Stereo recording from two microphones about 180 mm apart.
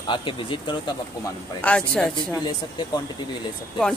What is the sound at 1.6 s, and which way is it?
Speech, 5° left (ahead or behind).